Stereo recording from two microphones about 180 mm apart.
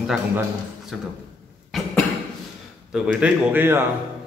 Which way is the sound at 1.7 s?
Centre (ahead or behind).